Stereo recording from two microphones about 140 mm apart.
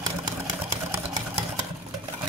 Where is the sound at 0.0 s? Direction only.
25° right (ahead or behind).